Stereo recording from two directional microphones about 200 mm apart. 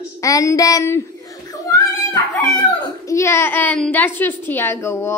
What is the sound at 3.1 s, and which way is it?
A child's voice, 15° left (ahead or behind).